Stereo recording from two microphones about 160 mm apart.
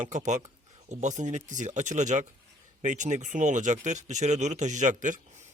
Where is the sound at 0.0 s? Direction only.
50° right (ahead or behind).